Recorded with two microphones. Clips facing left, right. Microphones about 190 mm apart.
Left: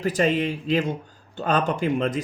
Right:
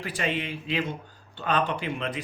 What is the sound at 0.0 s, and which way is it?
Speech, 40° left (ahead or behind).